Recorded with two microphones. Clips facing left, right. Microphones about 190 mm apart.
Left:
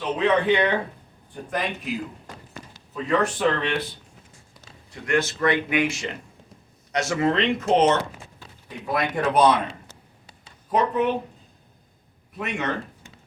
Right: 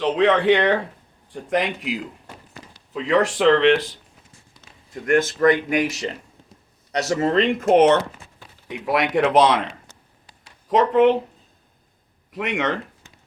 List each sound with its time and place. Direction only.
0.0 s speech: 90° right
5.4 s speech: 45° right (ahead or behind)
8.6 s speech: 80° right
10.7 s speech: 90° right
12.3 s speech: 85° right